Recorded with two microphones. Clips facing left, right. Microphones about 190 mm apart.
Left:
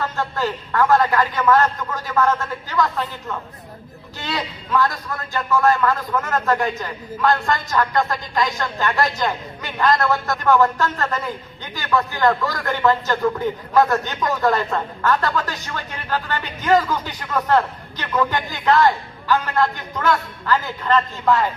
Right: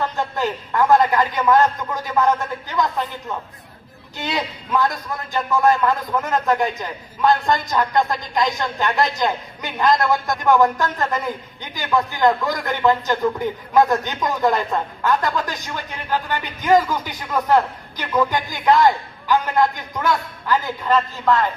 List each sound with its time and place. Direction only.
0.0 s speech: 15° right (ahead or behind)
4.2 s speech: 15° right (ahead or behind)
21.3 s speech: 5° left (ahead or behind)